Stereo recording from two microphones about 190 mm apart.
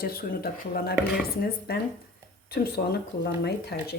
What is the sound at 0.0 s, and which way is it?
Speech, 50° left (ahead or behind).